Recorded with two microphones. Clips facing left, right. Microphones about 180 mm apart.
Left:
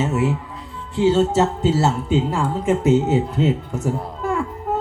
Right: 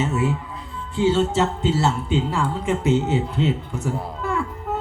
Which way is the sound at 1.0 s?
40° left (ahead or behind).